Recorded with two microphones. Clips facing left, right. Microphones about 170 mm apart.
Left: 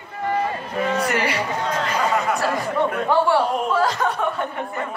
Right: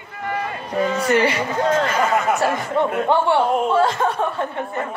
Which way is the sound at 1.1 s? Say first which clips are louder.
Right 5 dB; 25° right (ahead or behind).